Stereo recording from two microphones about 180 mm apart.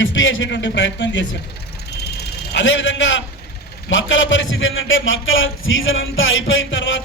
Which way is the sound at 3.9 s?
90° left.